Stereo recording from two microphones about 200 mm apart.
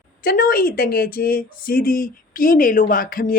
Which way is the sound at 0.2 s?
45° left (ahead or behind).